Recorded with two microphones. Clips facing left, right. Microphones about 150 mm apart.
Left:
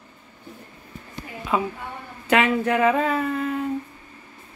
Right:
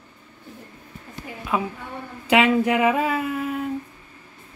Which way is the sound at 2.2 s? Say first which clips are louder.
Right 2 dB; 15° right (ahead or behind).